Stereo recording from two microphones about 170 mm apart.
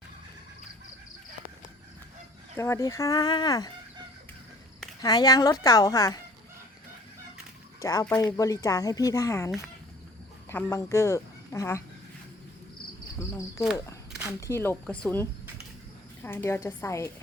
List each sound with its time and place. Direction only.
2.6 s speech: 15° left (ahead or behind)
5.0 s speech: 20° left (ahead or behind)
7.8 s speech: 20° left (ahead or behind)
10.5 s speech: 15° left (ahead or behind)
13.1 s speech: 15° left (ahead or behind)
14.1 s a sound: 5° right (ahead or behind)
14.4 s speech: 15° left (ahead or behind)